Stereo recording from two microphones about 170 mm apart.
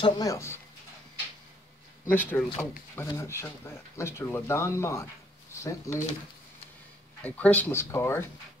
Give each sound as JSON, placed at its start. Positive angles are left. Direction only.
{"t": 0.0, "sound": "speech", "side_deg": 20}
{"t": 2.0, "sound": "speech", "side_deg": 10}
{"t": 7.2, "sound": "speech", "side_deg": 10}